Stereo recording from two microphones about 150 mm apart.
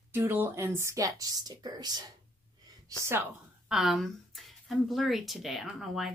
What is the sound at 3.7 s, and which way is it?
Speech, centre (ahead or behind).